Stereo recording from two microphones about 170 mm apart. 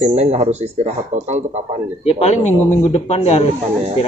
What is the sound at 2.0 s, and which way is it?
A man's voice, 40° left (ahead or behind).